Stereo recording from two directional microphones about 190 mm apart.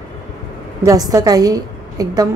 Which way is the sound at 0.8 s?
20° right (ahead or behind).